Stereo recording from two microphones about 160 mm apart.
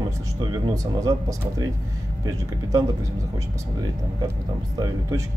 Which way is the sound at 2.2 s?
20° right (ahead or behind).